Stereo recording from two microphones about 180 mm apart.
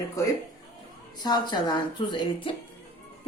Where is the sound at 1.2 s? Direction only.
25° left (ahead or behind).